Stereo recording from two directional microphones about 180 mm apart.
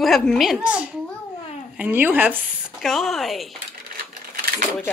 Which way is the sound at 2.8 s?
Centre (ahead or behind).